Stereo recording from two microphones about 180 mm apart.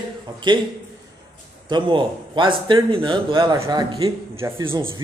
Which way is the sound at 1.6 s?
25° right (ahead or behind).